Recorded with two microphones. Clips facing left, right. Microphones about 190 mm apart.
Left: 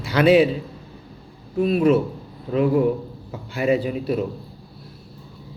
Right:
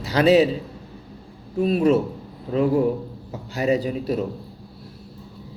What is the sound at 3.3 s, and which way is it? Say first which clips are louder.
Speech: left 1 dB; 40° right (ahead or behind).